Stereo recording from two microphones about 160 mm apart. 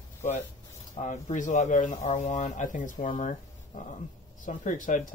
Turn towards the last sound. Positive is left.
turn(degrees=55)  # may be behind; listen again after turning